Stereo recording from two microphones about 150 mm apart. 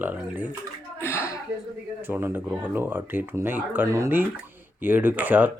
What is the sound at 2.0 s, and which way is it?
Speech, 15° right (ahead or behind).